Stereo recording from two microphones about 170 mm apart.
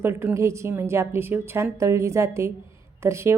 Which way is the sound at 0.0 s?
15° right (ahead or behind).